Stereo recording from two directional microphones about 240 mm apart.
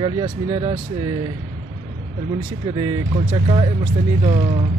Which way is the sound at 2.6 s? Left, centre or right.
Centre.